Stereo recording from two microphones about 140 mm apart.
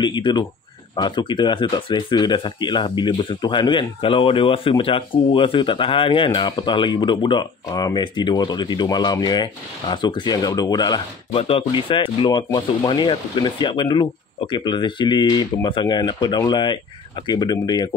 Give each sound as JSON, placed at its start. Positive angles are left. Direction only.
{"t": 0.0, "sound": "speech", "side_deg": 30}
{"t": 11.3, "sound": "speech", "side_deg": 45}